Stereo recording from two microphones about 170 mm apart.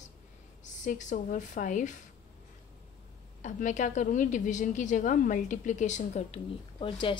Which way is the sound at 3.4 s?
45° left (ahead or behind).